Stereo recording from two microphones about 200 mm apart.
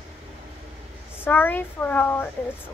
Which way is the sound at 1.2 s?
10° left (ahead or behind).